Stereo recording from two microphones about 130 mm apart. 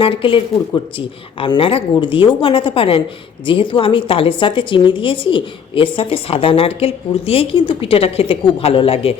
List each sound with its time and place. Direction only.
0.0 s a woman's voice: 45° left (ahead or behind)